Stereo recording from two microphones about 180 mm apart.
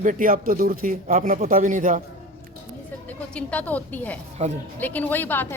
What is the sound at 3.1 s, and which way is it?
A woman's voice, 5° left (ahead or behind).